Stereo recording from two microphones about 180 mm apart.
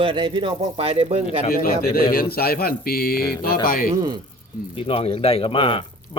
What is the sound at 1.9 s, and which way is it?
Speech, 55° left (ahead or behind).